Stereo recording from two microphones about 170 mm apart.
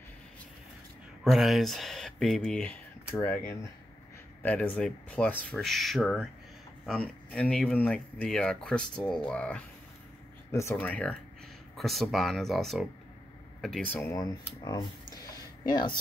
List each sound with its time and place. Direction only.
1.2 s speech: centre (ahead or behind)
10.5 s speech: 15° left (ahead or behind); by 14.0 s centre (ahead or behind)
14.0 s speech: 20° left (ahead or behind)